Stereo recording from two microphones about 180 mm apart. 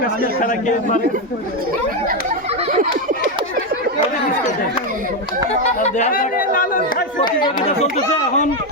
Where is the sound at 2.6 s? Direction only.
40° right (ahead or behind).